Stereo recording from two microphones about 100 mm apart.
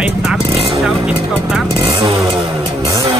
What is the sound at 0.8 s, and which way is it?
Speech, 5° right (ahead or behind).